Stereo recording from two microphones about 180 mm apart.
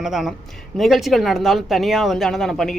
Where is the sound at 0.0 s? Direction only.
Centre (ahead or behind).